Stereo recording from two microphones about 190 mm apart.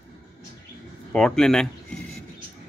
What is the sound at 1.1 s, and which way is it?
Speech, 5° left (ahead or behind).